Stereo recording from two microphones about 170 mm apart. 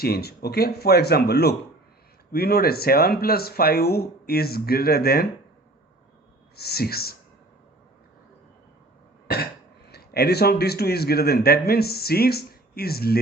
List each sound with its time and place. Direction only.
0.0 s speech: 65° left (ahead or behind)
6.6 s speech: 70° left (ahead or behind)
9.2 s throat clearing: 65° left (ahead or behind)
9.9 s speech: 70° left (ahead or behind)